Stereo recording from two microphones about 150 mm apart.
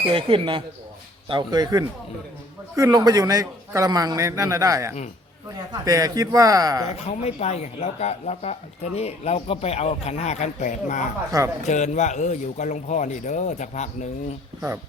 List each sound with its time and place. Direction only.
0.0 s a man's voice: 35° right (ahead or behind)
6.9 s speech: 45° left (ahead or behind)
11.3 s a man's voice: 20° right (ahead or behind)
11.6 s speech: 50° left (ahead or behind)